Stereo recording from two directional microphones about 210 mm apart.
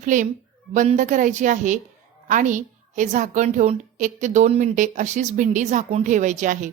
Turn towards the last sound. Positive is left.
turn(degrees=-35)  # may be behind; listen again after turning